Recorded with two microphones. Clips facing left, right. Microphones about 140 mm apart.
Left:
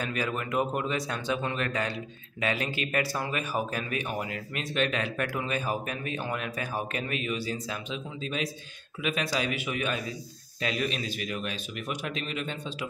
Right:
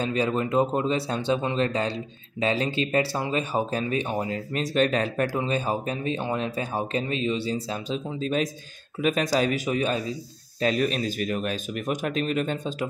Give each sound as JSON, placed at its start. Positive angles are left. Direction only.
{"t": 0.0, "sound": "speech", "side_deg": -30}